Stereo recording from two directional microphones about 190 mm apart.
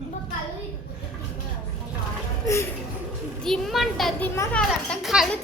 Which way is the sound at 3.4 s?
Centre (ahead or behind).